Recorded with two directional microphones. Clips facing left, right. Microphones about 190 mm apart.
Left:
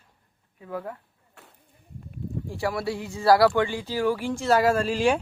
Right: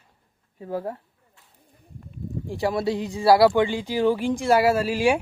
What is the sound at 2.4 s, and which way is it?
Speech, 15° right (ahead or behind).